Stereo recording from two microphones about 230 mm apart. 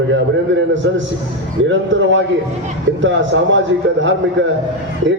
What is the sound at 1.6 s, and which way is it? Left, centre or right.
A man's voice, right.